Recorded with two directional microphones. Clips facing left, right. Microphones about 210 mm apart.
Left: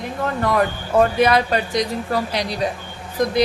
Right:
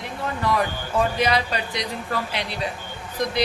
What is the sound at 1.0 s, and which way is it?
Speech, 55° left (ahead or behind).